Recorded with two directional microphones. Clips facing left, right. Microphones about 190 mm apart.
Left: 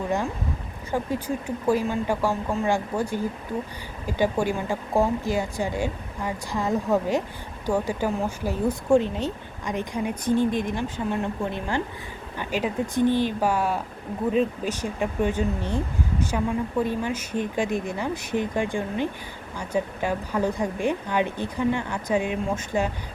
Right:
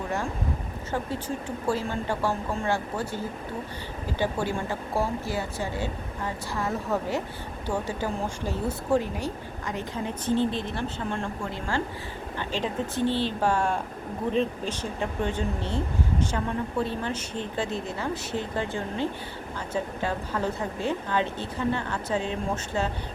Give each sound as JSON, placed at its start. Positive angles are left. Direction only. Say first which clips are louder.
{"t": 0.9, "sound": "a woman's voice", "louder": "left 4 dB", "side_deg": 10}
{"t": 9.0, "sound": "a woman's voice", "louder": "left 4 dB", "side_deg": 20}
{"t": 16.8, "sound": "a woman's voice", "louder": "left 3 dB", "side_deg": 10}